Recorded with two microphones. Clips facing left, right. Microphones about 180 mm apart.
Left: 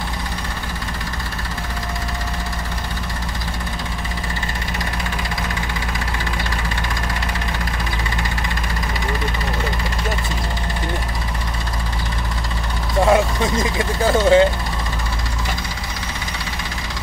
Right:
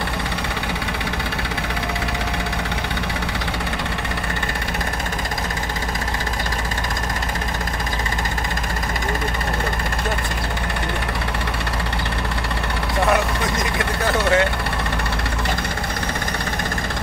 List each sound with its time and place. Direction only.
13.1 s vehicle: 25° left (ahead or behind)